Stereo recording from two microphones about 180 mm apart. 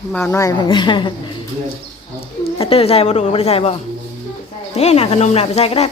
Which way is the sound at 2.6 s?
30° left (ahead or behind).